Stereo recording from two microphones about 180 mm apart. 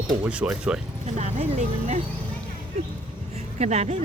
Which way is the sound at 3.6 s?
35° right (ahead or behind).